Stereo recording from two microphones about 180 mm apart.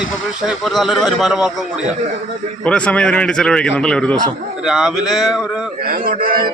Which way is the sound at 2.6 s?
5° left (ahead or behind).